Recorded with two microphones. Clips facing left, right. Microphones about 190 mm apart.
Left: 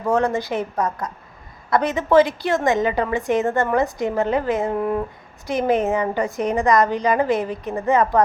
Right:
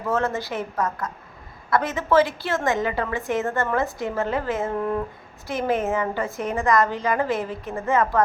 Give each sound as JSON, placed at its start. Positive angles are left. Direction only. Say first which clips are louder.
{"t": 0.0, "sound": "a woman's voice", "louder": "left 4 dB", "side_deg": 15}